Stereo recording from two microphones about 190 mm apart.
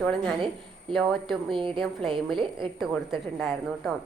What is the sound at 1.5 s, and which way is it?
A woman's voice, 25° right (ahead or behind).